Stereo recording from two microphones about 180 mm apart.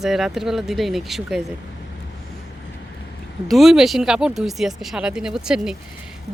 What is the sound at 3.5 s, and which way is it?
Speech, centre (ahead or behind).